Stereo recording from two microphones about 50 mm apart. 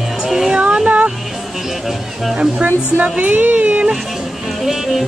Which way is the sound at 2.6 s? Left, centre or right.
Right.